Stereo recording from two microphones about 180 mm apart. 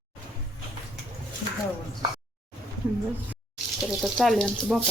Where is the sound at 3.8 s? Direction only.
Centre (ahead or behind).